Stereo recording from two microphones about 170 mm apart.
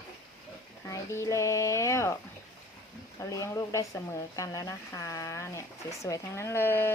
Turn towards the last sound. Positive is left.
turn(degrees=15)  # may be behind; listen again after turning